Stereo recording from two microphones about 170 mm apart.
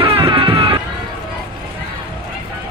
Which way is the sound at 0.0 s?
30° right (ahead or behind).